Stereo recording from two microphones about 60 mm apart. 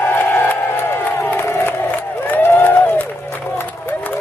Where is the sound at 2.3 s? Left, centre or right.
Left.